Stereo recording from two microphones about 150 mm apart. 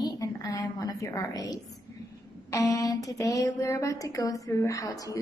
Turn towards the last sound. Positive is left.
turn(degrees=25)  # may be behind; listen again after turning